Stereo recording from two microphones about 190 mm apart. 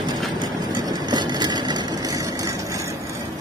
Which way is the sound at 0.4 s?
20° right (ahead or behind).